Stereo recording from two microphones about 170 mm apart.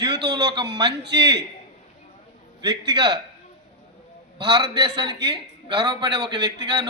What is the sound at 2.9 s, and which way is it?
Speech, 20° right (ahead or behind).